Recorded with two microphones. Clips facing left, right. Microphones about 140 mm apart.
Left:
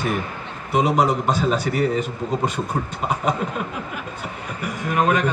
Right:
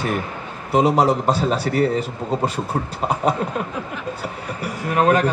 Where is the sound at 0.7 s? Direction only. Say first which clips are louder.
Right 2 dB; 30° right (ahead or behind).